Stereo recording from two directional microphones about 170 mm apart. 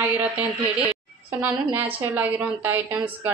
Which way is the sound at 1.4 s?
10° right (ahead or behind).